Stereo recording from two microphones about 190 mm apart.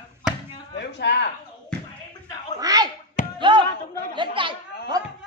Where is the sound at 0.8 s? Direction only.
65° left (ahead or behind).